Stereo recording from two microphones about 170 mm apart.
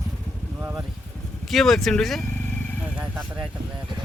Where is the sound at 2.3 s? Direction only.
10° left (ahead or behind).